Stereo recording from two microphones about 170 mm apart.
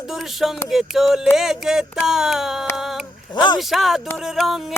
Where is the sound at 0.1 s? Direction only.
Centre (ahead or behind).